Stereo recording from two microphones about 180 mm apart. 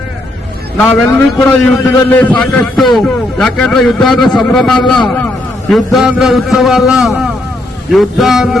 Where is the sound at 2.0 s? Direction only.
10° left (ahead or behind).